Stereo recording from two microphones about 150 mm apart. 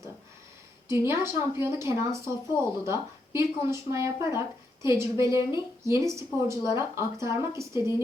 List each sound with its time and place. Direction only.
1.1 s a woman's voice: 25° left (ahead or behind)
1.6 s a woman's voice: 15° right (ahead or behind)